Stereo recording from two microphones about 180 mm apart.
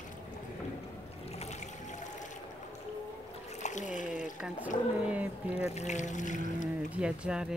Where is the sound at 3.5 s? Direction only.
40° left (ahead or behind).